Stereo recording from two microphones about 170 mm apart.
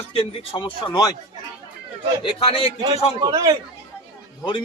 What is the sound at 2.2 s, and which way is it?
Speech, 35° left (ahead or behind).